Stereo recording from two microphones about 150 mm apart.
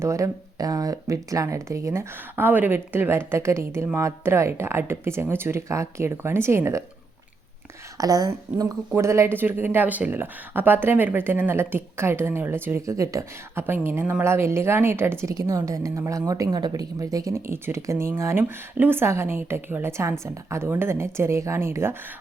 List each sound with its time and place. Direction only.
0.0 s speech: 20° right (ahead or behind)
7.9 s speech: 25° right (ahead or behind)